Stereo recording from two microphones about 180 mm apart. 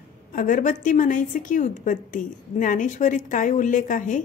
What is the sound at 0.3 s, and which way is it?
A woman's voice, 50° left (ahead or behind).